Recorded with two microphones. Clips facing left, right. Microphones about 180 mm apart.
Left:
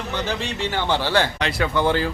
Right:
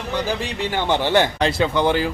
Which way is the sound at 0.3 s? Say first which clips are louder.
Right 2 dB; 15° right (ahead or behind).